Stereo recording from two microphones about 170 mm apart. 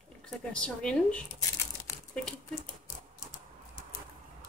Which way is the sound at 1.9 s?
20° left (ahead or behind).